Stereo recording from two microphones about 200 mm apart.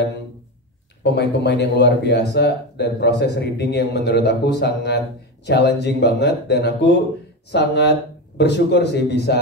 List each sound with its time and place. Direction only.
1.0 s speech: 60° left (ahead or behind)